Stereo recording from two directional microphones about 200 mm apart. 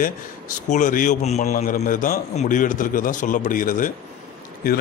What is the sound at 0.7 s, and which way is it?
A man's voice, 40° left (ahead or behind).